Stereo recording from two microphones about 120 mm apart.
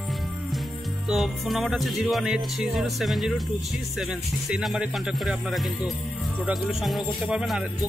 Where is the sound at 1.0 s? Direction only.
Centre (ahead or behind).